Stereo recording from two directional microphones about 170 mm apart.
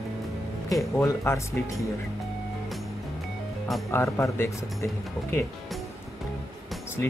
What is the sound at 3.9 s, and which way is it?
Speech, 15° left (ahead or behind).